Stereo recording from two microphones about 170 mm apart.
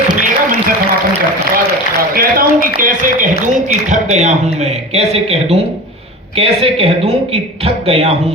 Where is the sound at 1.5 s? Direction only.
60° right (ahead or behind).